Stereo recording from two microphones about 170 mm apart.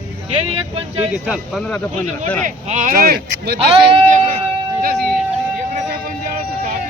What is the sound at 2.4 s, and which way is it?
Speech, 45° right (ahead or behind).